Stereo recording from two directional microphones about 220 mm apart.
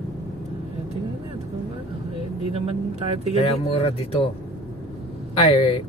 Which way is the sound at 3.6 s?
25° left (ahead or behind).